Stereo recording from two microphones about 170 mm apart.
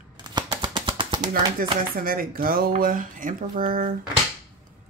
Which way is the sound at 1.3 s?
60° right (ahead or behind).